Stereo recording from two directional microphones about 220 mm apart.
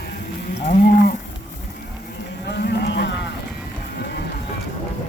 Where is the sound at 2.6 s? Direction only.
45° left (ahead or behind).